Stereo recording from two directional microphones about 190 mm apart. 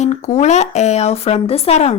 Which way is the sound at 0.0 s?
35° left (ahead or behind).